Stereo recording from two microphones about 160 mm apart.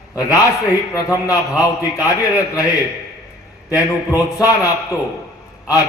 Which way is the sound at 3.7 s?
20° left (ahead or behind).